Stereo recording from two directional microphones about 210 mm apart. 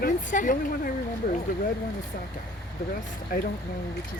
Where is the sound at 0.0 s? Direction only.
40° left (ahead or behind).